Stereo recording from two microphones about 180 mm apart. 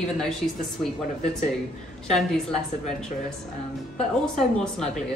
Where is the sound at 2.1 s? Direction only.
Centre (ahead or behind).